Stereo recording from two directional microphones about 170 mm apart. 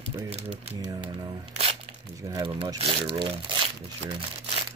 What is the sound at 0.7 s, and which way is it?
Speech, 25° right (ahead or behind).